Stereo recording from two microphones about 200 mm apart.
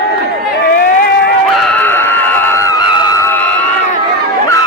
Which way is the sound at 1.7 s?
10° left (ahead or behind).